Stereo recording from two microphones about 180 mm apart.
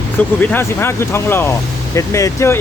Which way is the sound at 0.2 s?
10° left (ahead or behind).